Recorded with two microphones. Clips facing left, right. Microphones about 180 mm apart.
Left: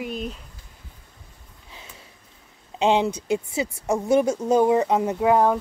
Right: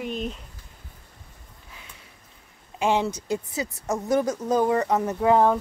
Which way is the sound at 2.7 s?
20° left (ahead or behind).